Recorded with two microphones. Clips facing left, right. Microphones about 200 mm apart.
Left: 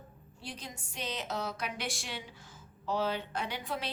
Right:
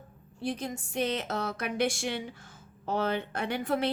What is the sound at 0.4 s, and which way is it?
A woman's voice, 55° right (ahead or behind).